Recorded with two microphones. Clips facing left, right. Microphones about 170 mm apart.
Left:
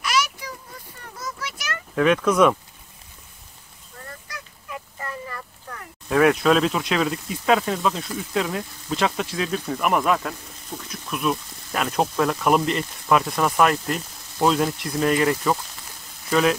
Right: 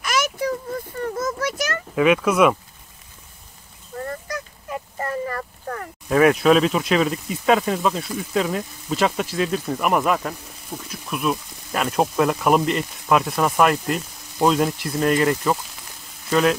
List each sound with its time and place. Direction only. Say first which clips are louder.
0.0 s a sound: right 3 dB; 50° right (ahead or behind)
2.0 s speech: right 1 dB; 5° right (ahead or behind)
4.0 s honk: right 10 dB; 45° right (ahead or behind)
6.0 s speech: right 2 dB; 5° right (ahead or behind)